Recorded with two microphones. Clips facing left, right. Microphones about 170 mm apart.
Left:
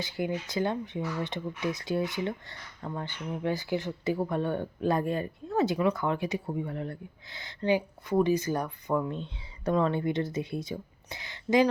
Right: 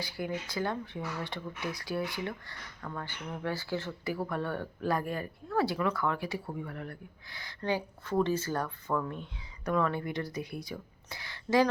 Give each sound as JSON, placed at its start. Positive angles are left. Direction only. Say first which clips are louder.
{"t": 0.0, "sound": "speech", "louder": "left 4 dB", "side_deg": 20}